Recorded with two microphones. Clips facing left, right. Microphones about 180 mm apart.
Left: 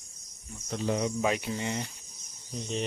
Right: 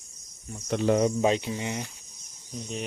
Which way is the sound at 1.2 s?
25° right (ahead or behind).